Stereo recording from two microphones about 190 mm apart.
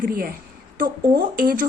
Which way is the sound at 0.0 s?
50° right (ahead or behind).